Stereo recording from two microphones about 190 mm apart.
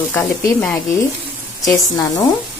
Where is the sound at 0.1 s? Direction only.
5° left (ahead or behind).